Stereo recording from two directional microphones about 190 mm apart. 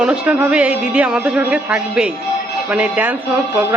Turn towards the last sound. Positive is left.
turn(degrees=-10)  # may be behind; listen again after turning